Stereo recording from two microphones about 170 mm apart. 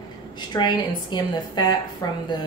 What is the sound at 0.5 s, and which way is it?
Speech, 25° left (ahead or behind).